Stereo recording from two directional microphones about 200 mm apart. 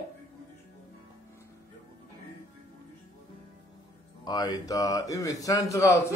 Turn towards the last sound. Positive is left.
turn(degrees=15)  # may be behind; listen again after turning